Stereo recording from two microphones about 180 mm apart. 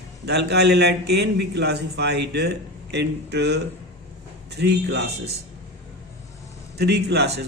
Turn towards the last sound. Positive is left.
turn(degrees=-70)  # may be behind; listen again after turning